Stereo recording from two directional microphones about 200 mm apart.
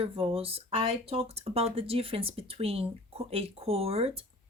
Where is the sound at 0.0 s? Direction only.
30° right (ahead or behind).